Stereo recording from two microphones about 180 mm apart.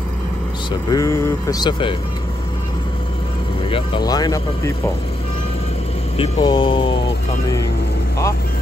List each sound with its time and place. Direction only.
0.7 s speech: 20° left (ahead or behind)
3.6 s speech: 30° left (ahead or behind)
6.1 s speech: 35° left (ahead or behind)
6.4 s speech: 25° left (ahead or behind)